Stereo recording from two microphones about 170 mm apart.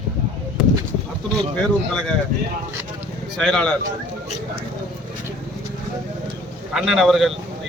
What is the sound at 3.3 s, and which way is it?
Speech, 5° left (ahead or behind).